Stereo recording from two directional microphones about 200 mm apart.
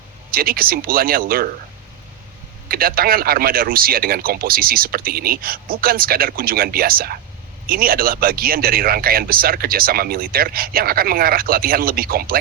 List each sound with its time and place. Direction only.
0.3 s speech: 45° right (ahead or behind)
2.6 s speech: 45° right (ahead or behind)